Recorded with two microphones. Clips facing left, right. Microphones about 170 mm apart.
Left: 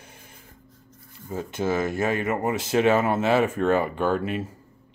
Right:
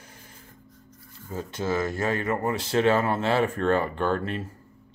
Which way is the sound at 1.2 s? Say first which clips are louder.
Left 3 dB; 15° left (ahead or behind).